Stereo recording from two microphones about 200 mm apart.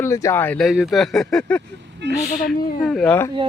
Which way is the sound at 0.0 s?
15° left (ahead or behind).